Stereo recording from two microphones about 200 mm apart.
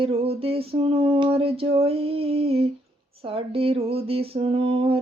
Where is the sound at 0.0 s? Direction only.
30° right (ahead or behind).